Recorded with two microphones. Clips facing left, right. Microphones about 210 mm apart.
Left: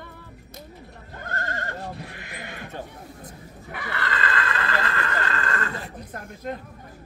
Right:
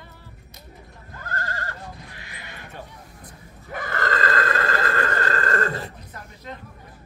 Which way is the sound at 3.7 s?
45° right (ahead or behind).